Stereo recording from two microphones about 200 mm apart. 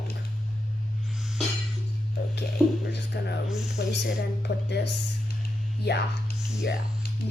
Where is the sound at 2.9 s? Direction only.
60° left (ahead or behind).